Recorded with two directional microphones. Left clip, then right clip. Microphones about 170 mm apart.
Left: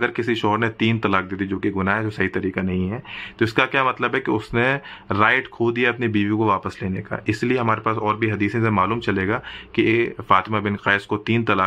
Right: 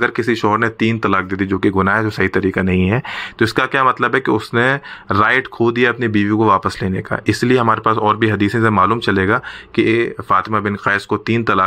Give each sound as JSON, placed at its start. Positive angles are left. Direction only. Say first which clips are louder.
{"t": 0.0, "sound": "speech", "louder": "right 5 dB", "side_deg": -20}
{"t": 1.6, "sound": "speech", "louder": "right 7 dB", "side_deg": -35}
{"t": 3.3, "sound": "speech", "louder": "right 4 dB", "side_deg": -20}
{"t": 8.5, "sound": "speech", "louder": "right 7 dB", "side_deg": -25}